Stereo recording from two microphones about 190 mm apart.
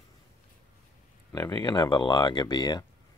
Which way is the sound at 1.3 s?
20° left (ahead or behind).